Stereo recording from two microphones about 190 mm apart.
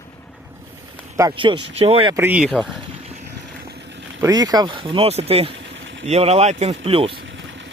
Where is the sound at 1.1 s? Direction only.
20° right (ahead or behind).